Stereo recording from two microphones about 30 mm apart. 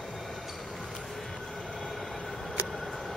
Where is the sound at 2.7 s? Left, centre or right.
Centre.